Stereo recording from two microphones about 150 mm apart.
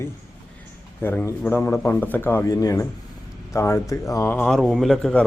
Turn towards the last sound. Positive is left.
turn(degrees=5)  # may be behind; listen again after turning